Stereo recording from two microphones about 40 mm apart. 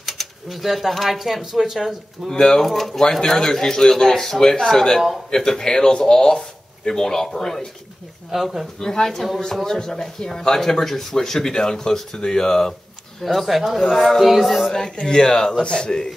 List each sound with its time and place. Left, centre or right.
0.0 s speech: centre
2.2 s speech: centre
2.6 s speech: centre
3.0 s speech: centre
8.3 s speech: centre
8.7 s speech: centre
13.2 s speech: centre
14.7 s a man's voice: centre